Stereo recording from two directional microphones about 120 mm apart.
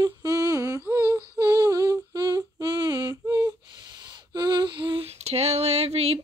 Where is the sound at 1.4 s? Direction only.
30° right (ahead or behind).